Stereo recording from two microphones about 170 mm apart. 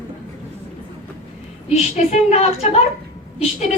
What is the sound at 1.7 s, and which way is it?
A woman's voice, 40° left (ahead or behind).